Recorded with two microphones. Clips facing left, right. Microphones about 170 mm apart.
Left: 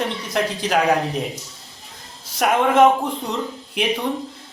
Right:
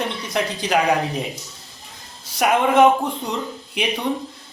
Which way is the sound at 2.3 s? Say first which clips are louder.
Even; centre (ahead or behind).